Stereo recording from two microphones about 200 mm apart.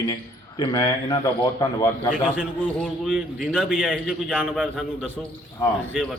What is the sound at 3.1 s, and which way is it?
A man's voice, 5° right (ahead or behind).